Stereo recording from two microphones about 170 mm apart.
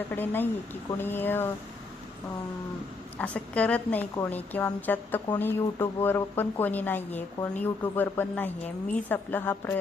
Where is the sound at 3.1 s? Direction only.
10° left (ahead or behind).